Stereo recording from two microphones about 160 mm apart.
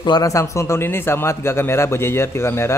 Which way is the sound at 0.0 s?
25° left (ahead or behind).